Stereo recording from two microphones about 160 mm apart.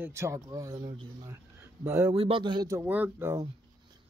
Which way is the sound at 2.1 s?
35° right (ahead or behind).